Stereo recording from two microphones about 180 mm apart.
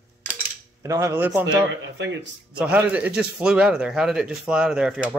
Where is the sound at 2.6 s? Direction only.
5° right (ahead or behind).